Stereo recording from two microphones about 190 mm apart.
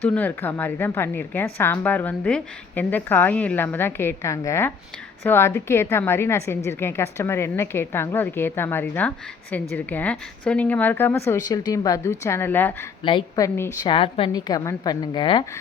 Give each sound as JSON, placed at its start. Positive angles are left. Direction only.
{"t": 0.0, "sound": "a woman's voice", "side_deg": 10}
{"t": 13.0, "sound": "a woman's voice", "side_deg": 25}
{"t": 13.8, "sound": "a woman's voice", "side_deg": 25}